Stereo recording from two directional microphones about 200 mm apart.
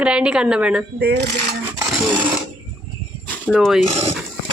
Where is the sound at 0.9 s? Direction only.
55° right (ahead or behind).